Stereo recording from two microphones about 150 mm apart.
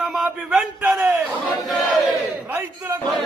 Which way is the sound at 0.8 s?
15° right (ahead or behind).